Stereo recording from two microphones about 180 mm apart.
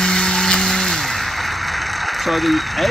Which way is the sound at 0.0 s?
5° left (ahead or behind).